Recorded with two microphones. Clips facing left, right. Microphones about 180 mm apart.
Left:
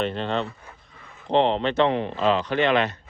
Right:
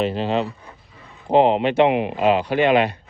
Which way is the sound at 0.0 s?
5° right (ahead or behind).